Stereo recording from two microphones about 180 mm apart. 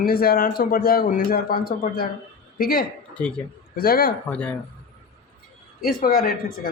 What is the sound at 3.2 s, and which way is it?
Speech, 5° left (ahead or behind).